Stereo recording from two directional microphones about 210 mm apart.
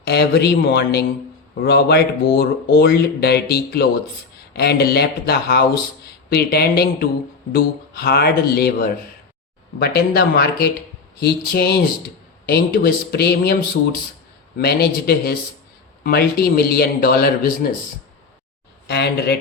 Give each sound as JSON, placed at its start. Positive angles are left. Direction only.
{"t": 0.0, "sound": "speech", "side_deg": 50}
{"t": 14.6, "sound": "speech", "side_deg": 50}
{"t": 18.9, "sound": "speech", "side_deg": 50}